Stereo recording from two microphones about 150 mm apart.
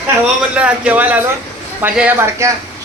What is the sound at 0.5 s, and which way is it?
Speech, 10° right (ahead or behind).